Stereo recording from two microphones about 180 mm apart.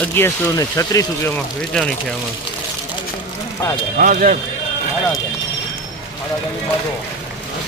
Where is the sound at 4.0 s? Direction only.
50° right (ahead or behind).